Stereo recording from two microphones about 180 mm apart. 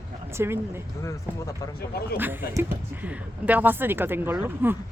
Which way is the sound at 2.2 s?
10° right (ahead or behind).